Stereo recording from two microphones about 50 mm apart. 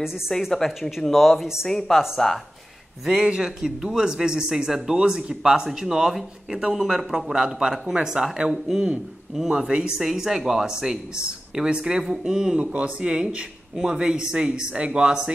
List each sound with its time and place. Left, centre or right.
0.3 s a woman's voice: centre
0.7 s speech: centre
3.1 s speech: centre